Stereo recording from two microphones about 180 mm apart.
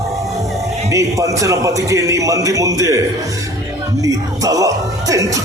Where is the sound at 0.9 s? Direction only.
20° right (ahead or behind).